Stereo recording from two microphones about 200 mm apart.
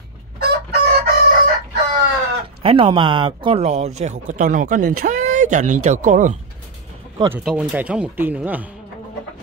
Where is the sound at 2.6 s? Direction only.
25° right (ahead or behind).